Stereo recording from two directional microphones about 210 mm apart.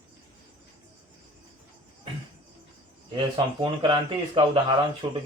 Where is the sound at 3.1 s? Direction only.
20° right (ahead or behind).